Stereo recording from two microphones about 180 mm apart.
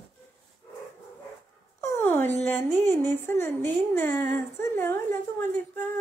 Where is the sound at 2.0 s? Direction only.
10° left (ahead or behind).